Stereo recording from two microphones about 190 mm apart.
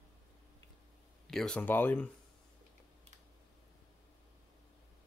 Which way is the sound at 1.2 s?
Centre (ahead or behind).